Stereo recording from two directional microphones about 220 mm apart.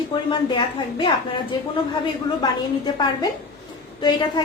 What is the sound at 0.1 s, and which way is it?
A woman's voice, 20° left (ahead or behind).